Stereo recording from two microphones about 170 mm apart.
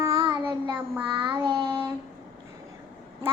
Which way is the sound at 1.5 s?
30° right (ahead or behind).